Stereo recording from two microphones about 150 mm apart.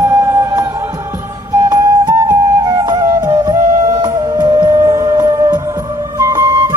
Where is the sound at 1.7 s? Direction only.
25° right (ahead or behind).